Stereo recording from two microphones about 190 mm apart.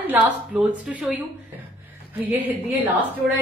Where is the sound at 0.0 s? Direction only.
10° right (ahead or behind).